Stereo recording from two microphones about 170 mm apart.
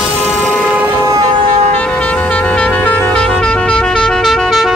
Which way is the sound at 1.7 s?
10° left (ahead or behind).